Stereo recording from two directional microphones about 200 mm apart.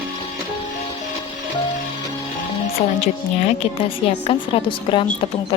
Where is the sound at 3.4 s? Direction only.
30° left (ahead or behind).